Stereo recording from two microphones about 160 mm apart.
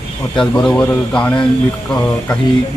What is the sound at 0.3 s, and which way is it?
Speech, 5° left (ahead or behind).